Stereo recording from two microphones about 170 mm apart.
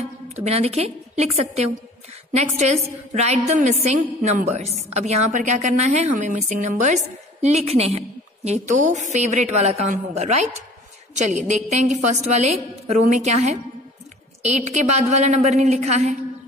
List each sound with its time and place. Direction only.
0.4 s a woman's voice: 40° right (ahead or behind)